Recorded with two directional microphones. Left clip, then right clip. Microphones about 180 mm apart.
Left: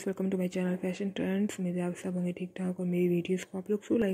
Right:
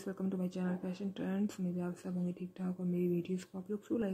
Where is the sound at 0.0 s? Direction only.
15° left (ahead or behind).